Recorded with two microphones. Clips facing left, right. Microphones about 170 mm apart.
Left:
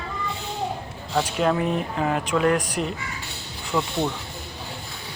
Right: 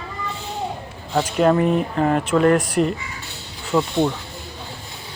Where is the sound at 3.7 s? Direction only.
15° right (ahead or behind).